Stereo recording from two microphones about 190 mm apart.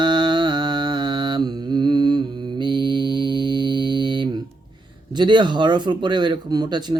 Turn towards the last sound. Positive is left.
turn(degrees=-20)  # may be behind; listen again after turning